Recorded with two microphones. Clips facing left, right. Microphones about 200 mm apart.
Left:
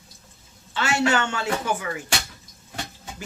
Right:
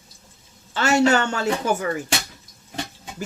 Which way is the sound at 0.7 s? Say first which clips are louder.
Right 5 dB; 40° right (ahead or behind).